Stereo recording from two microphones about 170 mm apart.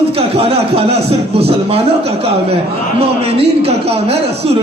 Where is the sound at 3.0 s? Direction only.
35° right (ahead or behind).